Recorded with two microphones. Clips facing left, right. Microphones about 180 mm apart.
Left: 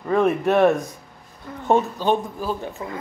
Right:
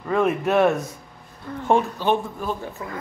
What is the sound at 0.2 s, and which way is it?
Speech, centre (ahead or behind).